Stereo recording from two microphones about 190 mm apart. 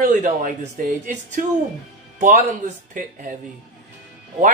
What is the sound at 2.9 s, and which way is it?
Speech, 45° right (ahead or behind).